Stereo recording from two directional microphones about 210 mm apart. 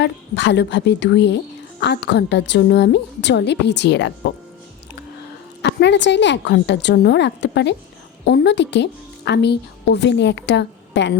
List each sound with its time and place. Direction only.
0.0 s a woman's voice: 55° left (ahead or behind)
5.6 s a woman's voice: 55° left (ahead or behind)